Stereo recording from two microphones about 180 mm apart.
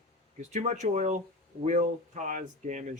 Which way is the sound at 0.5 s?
40° right (ahead or behind).